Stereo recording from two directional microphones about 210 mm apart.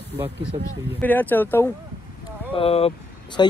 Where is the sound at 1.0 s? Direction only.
10° left (ahead or behind).